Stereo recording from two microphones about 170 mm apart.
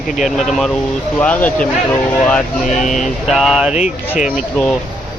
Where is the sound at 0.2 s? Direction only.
Centre (ahead or behind).